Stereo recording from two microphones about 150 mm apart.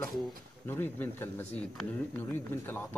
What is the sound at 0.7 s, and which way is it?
Speech, 15° left (ahead or behind).